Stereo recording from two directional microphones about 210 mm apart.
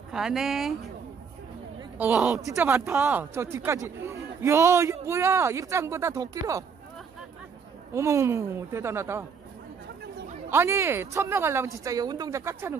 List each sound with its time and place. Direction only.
0.1 s speech: centre (ahead or behind)
2.0 s speech: 5° right (ahead or behind)
7.9 s speech: 15° right (ahead or behind)
10.5 s speech: 10° right (ahead or behind)